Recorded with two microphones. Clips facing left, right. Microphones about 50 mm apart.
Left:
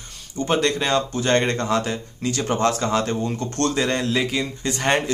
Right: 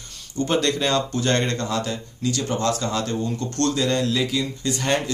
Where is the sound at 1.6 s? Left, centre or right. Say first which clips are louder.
Left 3 dB; left.